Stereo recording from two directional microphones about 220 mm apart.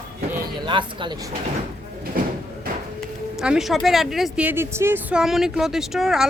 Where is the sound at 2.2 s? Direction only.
40° right (ahead or behind).